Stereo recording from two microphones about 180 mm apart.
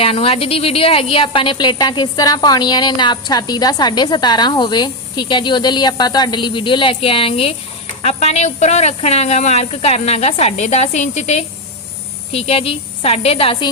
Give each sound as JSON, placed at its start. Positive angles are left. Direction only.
{"t": 0.0, "sound": "a woman's voice", "side_deg": 30}